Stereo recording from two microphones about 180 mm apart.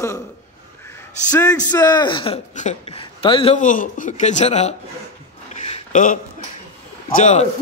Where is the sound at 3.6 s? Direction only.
45° left (ahead or behind).